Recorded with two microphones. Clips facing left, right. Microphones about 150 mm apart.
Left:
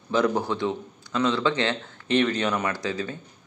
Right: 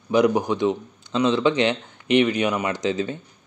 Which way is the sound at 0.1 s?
15° right (ahead or behind).